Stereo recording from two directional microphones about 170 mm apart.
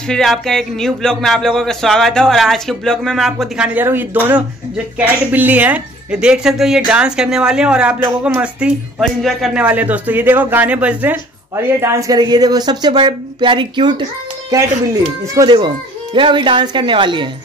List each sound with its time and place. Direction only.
0.1 s speech: centre (ahead or behind); by 14.0 s 30° right (ahead or behind)
15.3 s speech: 25° right (ahead or behind)